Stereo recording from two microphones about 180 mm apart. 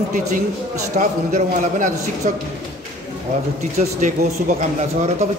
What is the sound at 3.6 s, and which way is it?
Speech, 40° right (ahead or behind).